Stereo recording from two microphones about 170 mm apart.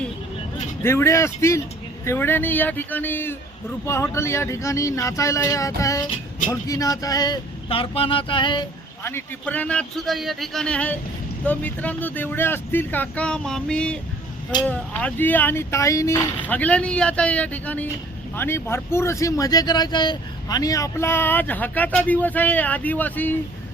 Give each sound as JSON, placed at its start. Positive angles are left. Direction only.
{"t": 0.8, "sound": "speech", "side_deg": 15}
{"t": 9.0, "sound": "a man's voice", "side_deg": 10}